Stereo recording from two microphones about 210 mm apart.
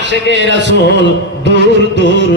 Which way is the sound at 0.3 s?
55° right (ahead or behind).